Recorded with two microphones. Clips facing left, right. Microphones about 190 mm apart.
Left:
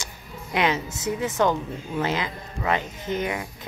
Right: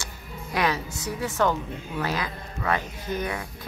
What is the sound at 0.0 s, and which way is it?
A woman's voice, 20° left (ahead or behind).